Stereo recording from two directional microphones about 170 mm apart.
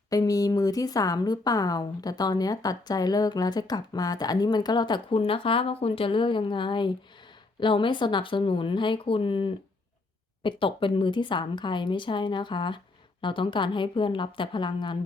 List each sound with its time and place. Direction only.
0.1 s speech: 20° left (ahead or behind)